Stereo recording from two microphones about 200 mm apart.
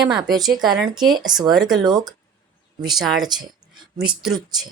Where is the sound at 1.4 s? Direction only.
Centre (ahead or behind).